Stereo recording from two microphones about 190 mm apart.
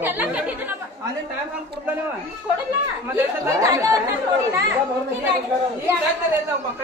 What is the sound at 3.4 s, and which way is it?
Speech, 15° right (ahead or behind).